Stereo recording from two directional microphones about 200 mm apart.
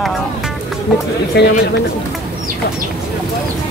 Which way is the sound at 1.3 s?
55° left (ahead or behind).